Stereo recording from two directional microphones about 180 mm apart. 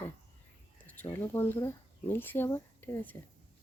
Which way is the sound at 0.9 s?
15° left (ahead or behind).